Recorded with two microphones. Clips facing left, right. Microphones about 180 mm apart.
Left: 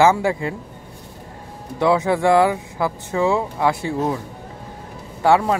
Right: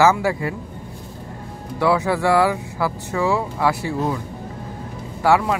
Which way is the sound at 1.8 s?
25° left (ahead or behind).